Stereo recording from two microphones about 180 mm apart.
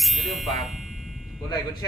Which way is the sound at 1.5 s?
20° left (ahead or behind).